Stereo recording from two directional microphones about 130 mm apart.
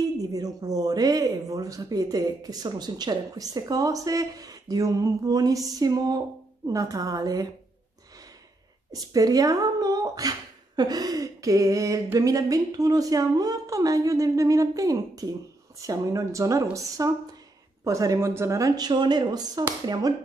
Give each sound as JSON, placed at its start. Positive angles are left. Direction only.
{"t": 0.0, "sound": "speech", "side_deg": -30}
{"t": 8.9, "sound": "speech", "side_deg": -30}